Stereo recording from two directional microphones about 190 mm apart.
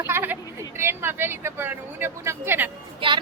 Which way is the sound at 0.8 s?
10° right (ahead or behind).